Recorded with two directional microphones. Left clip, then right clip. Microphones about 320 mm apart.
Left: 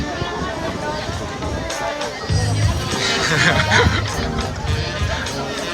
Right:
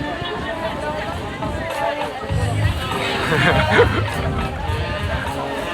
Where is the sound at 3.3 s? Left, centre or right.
Centre.